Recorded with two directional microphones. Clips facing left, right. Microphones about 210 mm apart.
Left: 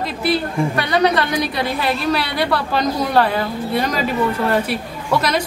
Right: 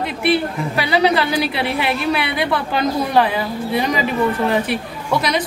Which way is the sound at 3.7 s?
Centre (ahead or behind).